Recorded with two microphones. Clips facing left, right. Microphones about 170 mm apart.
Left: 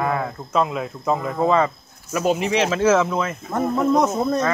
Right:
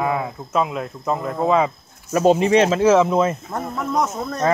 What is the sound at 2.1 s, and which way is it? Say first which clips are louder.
Speech: right 5 dB; 30° right (ahead or behind).